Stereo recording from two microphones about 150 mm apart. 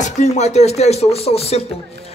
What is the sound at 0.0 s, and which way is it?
Speech, 50° left (ahead or behind).